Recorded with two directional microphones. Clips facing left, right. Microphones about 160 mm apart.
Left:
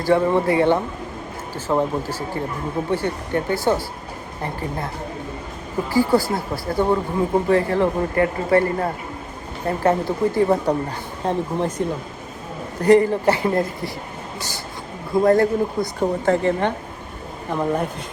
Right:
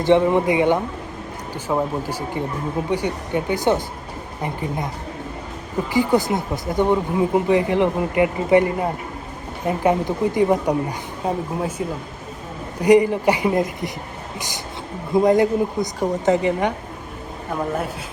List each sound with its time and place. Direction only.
0.0 s speech: 20° right (ahead or behind)
5.9 s speech: 15° right (ahead or behind)
17.5 s speech: centre (ahead or behind)